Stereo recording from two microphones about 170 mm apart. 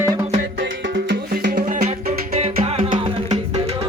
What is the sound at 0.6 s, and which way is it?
Music, 90° right.